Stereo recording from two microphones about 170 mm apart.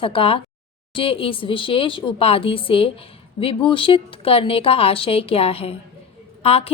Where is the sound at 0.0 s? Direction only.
35° left (ahead or behind).